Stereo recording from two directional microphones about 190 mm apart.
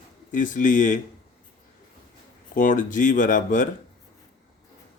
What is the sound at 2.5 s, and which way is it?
Speech, 45° left (ahead or behind).